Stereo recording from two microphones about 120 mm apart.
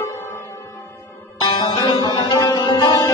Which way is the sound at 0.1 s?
20° left (ahead or behind).